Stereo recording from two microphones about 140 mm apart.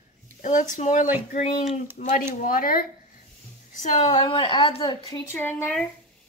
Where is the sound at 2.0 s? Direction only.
65° left (ahead or behind).